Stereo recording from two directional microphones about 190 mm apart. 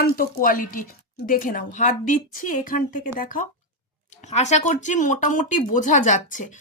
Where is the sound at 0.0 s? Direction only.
45° left (ahead or behind).